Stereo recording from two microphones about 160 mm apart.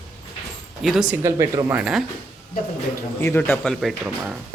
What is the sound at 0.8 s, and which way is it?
Speech, 5° right (ahead or behind).